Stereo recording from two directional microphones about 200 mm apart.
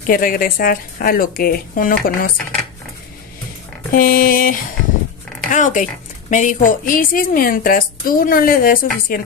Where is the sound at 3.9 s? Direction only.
45° left (ahead or behind).